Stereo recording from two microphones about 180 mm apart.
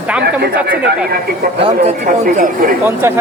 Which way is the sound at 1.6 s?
40° right (ahead or behind).